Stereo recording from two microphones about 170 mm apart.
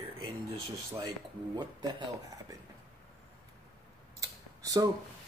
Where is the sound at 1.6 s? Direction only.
25° right (ahead or behind).